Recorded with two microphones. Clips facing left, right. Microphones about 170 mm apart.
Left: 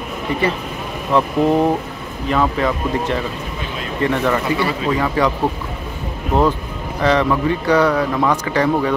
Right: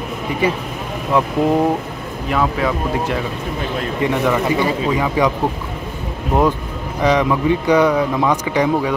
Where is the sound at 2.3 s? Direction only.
5° right (ahead or behind).